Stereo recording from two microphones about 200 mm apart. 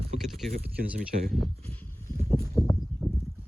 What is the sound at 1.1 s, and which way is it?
Speech, 40° right (ahead or behind).